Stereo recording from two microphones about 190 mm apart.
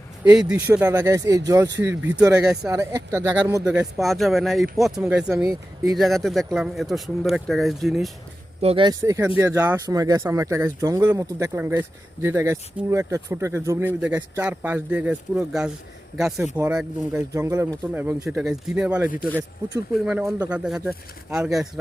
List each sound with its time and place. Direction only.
0.3 s speech: 5° right (ahead or behind)
2.6 s speech: 15° right (ahead or behind)
3.6 s speech: 5° right (ahead or behind)
5.4 s speech: 15° right (ahead or behind)
5.9 s speech: centre (ahead or behind)
8.6 s speech: 25° right (ahead or behind); by 21.7 s 5° right (ahead or behind)